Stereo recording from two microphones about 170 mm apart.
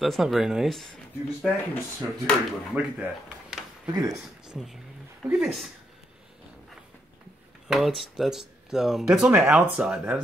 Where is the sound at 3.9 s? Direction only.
20° right (ahead or behind).